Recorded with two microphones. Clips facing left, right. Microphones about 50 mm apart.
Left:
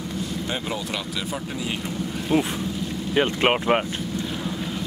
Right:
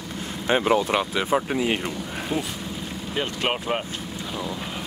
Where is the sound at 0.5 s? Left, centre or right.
Right.